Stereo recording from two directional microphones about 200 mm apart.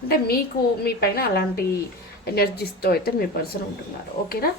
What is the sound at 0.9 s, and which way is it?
A woman's voice, 50° left (ahead or behind).